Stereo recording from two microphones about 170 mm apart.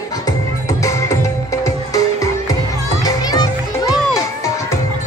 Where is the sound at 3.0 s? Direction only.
25° left (ahead or behind).